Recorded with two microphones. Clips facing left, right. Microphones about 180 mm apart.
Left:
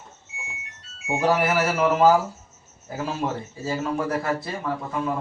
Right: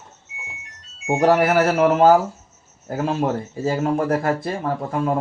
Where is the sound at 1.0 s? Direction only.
60° right (ahead or behind).